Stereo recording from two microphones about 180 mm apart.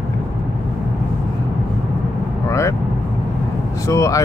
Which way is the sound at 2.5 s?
15° left (ahead or behind).